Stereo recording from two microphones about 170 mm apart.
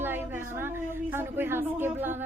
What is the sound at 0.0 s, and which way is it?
A woman's voice, 10° right (ahead or behind).